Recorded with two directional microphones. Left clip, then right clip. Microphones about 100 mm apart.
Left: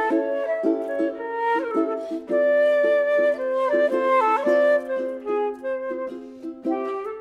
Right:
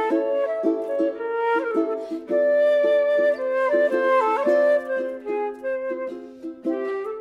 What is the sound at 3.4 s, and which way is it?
Music, 10° left (ahead or behind).